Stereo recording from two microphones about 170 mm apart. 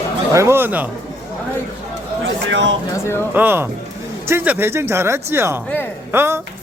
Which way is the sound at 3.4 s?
10° right (ahead or behind).